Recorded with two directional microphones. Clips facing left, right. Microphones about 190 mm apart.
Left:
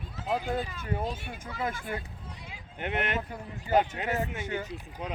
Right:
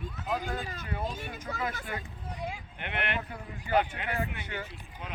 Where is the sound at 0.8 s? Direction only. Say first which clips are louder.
Left 3 dB; 40° left (ahead or behind).